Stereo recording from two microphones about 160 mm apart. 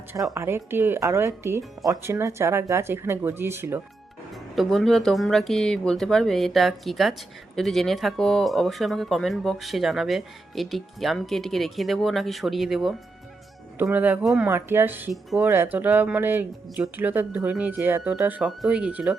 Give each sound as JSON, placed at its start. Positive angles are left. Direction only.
{"t": 0.1, "sound": "speech", "side_deg": -20}
{"t": 4.5, "sound": "speech", "side_deg": 0}